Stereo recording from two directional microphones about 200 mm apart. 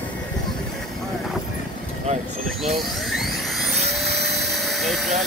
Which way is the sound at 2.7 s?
Centre (ahead or behind).